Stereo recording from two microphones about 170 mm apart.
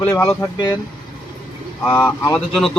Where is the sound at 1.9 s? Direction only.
15° left (ahead or behind).